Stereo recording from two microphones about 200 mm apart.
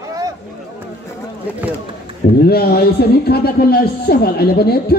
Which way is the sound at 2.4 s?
50° left (ahead or behind).